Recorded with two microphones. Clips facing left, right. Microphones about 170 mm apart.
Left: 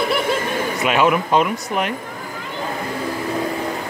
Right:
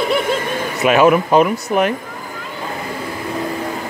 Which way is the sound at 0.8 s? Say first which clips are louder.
Right 6 dB; 30° right (ahead or behind).